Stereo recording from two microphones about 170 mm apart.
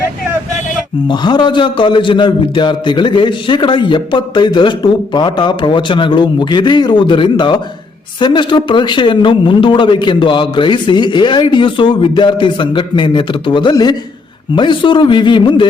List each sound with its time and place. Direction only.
1.0 s a man's voice: 25° left (ahead or behind)